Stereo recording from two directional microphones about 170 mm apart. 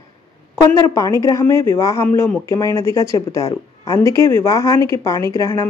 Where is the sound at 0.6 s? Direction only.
15° left (ahead or behind).